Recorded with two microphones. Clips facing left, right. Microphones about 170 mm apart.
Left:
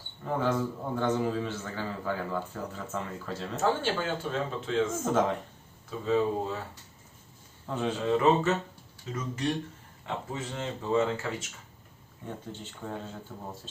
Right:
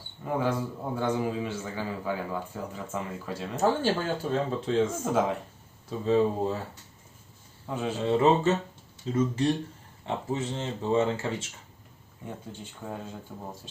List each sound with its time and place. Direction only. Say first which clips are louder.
0.3 s a man's voice: even; 10° right (ahead or behind)
3.6 s speech: right 3 dB; 35° right (ahead or behind)
5.0 s a man's voice: even; 10° right (ahead or behind)
5.9 s speech: right 3 dB; 35° right (ahead or behind)
7.7 s a man's voice: even; 10° right (ahead or behind)
8.0 s speech: right 2 dB; 30° right (ahead or behind)
12.2 s a man's voice: even; 10° right (ahead or behind)